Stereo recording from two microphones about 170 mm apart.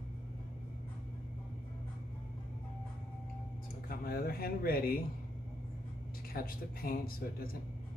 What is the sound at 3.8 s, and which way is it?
Speech, 60° left (ahead or behind).